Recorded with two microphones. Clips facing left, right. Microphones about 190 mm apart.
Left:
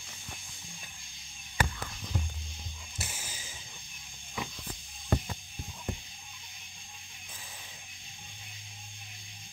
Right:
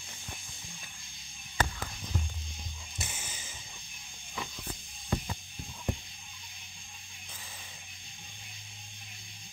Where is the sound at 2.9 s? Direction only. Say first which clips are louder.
Even; 5° left (ahead or behind).